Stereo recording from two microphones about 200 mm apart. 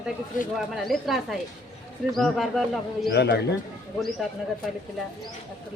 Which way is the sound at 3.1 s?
55° left (ahead or behind).